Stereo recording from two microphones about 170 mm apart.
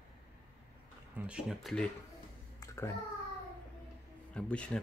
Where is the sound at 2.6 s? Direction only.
15° left (ahead or behind).